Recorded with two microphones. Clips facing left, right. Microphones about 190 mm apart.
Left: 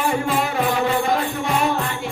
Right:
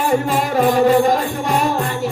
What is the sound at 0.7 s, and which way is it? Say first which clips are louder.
Music: right 8 dB; 40° right (ahead or behind).